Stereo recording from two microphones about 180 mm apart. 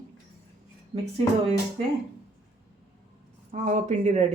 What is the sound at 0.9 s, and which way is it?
Speech, 35° right (ahead or behind).